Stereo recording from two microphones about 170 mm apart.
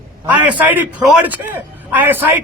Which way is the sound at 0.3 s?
10° right (ahead or behind).